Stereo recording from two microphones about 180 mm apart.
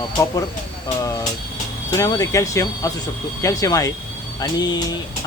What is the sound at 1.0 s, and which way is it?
Speech, 20° left (ahead or behind).